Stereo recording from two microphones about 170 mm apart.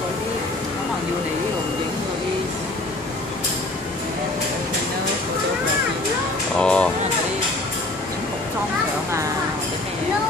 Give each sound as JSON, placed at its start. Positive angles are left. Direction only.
{"t": 6.6, "sound": "music", "side_deg": 5}